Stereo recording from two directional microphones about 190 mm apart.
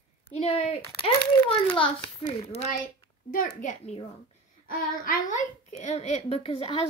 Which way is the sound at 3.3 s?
45° left (ahead or behind).